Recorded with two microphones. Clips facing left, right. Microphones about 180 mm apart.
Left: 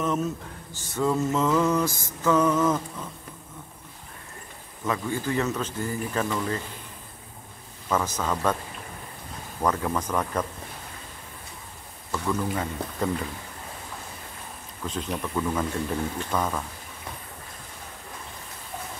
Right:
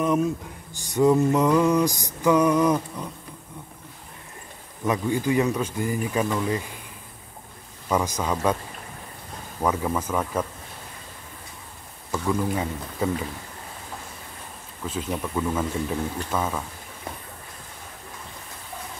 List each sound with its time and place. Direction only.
0.0 s music: 10° right (ahead or behind)
4.8 s music: 15° right (ahead or behind)
7.9 s music: 15° right (ahead or behind)
9.6 s music: 5° right (ahead or behind)
12.1 s music: 10° right (ahead or behind)
14.9 s speech: 5° right (ahead or behind)